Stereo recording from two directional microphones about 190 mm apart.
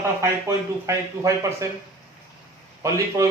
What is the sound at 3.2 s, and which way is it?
Speech, 15° right (ahead or behind).